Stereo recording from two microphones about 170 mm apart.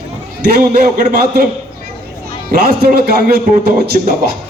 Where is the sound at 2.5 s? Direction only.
65° right (ahead or behind).